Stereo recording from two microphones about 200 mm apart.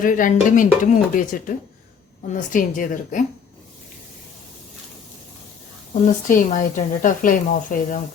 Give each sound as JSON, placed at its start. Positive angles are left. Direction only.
{"t": 0.0, "sound": "speech", "side_deg": 40}
{"t": 5.9, "sound": "speech", "side_deg": 40}